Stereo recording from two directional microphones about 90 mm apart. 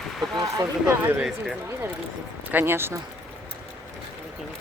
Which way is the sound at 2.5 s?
25° right (ahead or behind).